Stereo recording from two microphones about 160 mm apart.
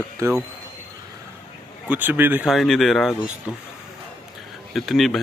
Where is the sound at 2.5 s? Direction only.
Centre (ahead or behind).